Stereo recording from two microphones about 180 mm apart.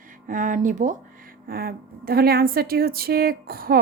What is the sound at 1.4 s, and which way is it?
A woman's voice, 55° right (ahead or behind).